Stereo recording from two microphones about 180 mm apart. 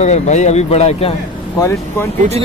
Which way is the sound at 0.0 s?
40° left (ahead or behind).